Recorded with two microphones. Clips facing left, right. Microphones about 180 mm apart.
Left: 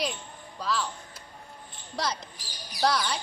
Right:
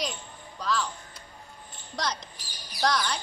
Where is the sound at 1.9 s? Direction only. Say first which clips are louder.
Left 1 dB; 5° left (ahead or behind).